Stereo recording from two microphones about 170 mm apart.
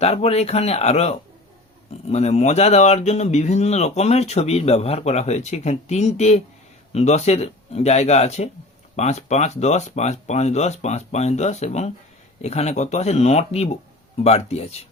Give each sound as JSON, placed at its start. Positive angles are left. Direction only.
{"t": 0.0, "sound": "speech", "side_deg": 35}